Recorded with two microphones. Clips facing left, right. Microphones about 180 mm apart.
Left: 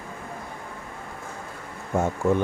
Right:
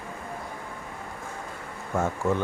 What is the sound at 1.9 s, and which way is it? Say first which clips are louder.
Speech: left 3 dB; 15° left (ahead or behind).